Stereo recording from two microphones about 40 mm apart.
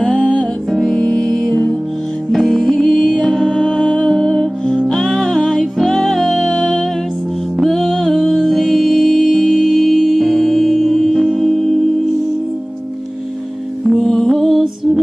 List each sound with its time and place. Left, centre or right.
0.0 s music: centre
0.7 s music: centre
1.5 s music: left
2.3 s music: centre
3.6 s music: left; by 11.8 s centre
14.0 s music: centre